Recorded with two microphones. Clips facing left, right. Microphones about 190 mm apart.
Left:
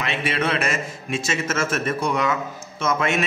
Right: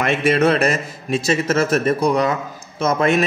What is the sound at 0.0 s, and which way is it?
A man's voice, 45° right (ahead or behind).